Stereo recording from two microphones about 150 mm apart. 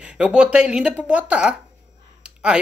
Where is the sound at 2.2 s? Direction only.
5° right (ahead or behind).